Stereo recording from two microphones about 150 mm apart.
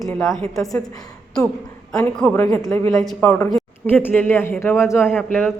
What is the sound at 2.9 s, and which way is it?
Speech, centre (ahead or behind).